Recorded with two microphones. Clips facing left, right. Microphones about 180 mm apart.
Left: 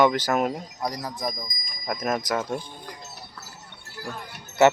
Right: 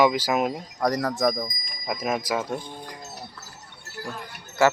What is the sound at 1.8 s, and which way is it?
Speech, 5° right (ahead or behind).